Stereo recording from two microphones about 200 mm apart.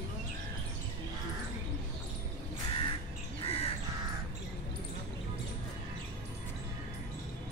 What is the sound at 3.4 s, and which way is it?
Crow, 30° left (ahead or behind).